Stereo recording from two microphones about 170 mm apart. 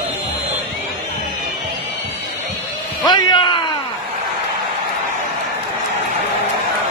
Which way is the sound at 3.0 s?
25° left (ahead or behind).